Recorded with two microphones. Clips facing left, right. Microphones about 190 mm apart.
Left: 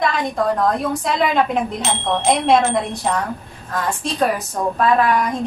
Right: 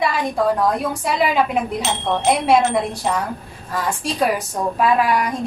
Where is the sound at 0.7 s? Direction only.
10° right (ahead or behind).